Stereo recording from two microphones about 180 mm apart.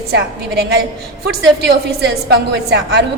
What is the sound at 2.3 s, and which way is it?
Speech, 65° right (ahead or behind).